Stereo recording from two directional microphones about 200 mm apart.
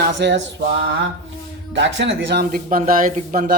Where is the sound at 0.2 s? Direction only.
60° right (ahead or behind).